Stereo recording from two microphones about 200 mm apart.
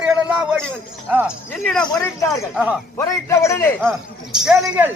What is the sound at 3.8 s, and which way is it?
Speech, centre (ahead or behind).